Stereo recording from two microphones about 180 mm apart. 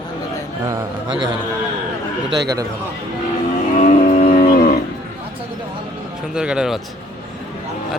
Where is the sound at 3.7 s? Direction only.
45° left (ahead or behind).